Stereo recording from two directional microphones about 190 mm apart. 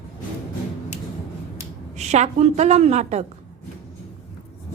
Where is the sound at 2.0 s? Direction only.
35° right (ahead or behind).